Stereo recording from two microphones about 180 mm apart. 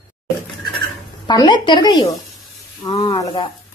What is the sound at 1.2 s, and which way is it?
A woman's voice, 25° left (ahead or behind).